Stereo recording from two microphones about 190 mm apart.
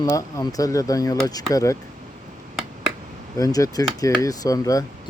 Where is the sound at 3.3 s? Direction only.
20° left (ahead or behind).